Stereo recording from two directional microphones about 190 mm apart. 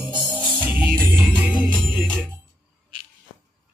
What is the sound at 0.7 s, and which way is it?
Music, 25° left (ahead or behind).